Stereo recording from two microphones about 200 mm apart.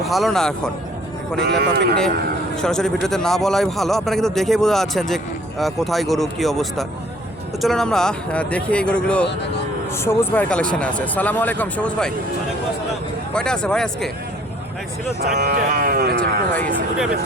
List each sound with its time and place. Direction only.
0.0 s a man's voice: centre (ahead or behind)
1.4 s speech: 55° right (ahead or behind)
2.6 s a man's voice: 5° left (ahead or behind)
13.3 s a man's voice: 5° left (ahead or behind)
15.2 s speech: 50° right (ahead or behind)